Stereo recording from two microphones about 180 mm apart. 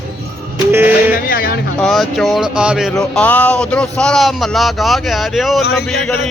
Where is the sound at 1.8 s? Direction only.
Centre (ahead or behind).